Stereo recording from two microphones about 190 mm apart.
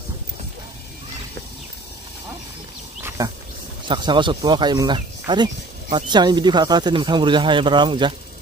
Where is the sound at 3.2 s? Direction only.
20° right (ahead or behind).